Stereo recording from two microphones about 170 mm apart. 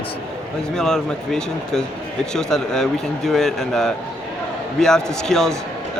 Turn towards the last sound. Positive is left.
turn(degrees=5)  # may be behind; listen again after turning